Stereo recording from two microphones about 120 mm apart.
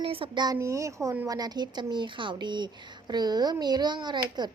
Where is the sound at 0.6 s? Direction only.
25° right (ahead or behind).